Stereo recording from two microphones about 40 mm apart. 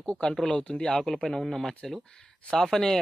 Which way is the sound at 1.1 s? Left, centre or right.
Centre.